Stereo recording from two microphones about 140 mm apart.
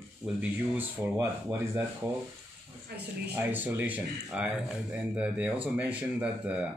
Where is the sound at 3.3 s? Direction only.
15° right (ahead or behind).